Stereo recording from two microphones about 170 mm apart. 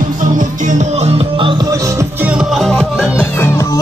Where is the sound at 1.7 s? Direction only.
20° right (ahead or behind); by 3.2 s centre (ahead or behind).